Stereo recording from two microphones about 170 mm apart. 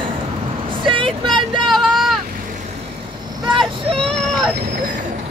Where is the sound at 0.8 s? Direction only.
30° right (ahead or behind).